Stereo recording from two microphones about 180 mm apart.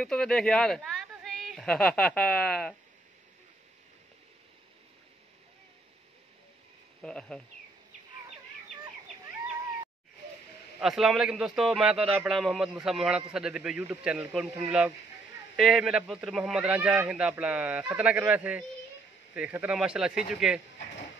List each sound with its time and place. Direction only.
0.0 s speech: 5° left (ahead or behind)
7.0 s a man's voice: 5° left (ahead or behind)
10.8 s a man's voice: centre (ahead or behind)